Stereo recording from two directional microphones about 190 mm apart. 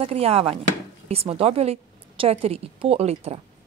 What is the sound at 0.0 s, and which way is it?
Speech, 30° right (ahead or behind).